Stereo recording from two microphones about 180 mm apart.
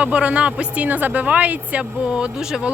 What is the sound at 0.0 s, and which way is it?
Speech, 5° right (ahead or behind).